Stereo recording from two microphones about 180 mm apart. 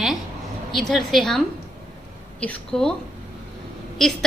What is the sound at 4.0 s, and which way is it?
Speech, centre (ahead or behind).